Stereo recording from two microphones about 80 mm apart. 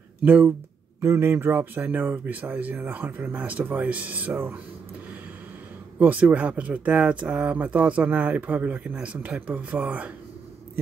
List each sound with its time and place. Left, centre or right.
0.2 s speech: right
1.0 s speech: right
5.9 s speech: centre